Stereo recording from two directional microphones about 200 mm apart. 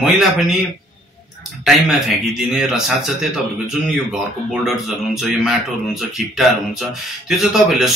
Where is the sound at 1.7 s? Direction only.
Centre (ahead or behind).